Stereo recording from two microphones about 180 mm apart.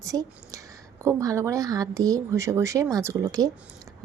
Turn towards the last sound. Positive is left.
turn(degrees=-15)  # may be behind; listen again after turning